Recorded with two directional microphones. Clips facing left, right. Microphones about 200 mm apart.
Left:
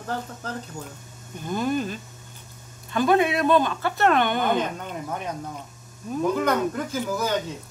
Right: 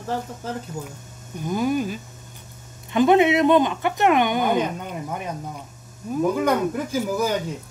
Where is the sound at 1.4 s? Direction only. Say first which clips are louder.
Right 3 dB; 10° right (ahead or behind).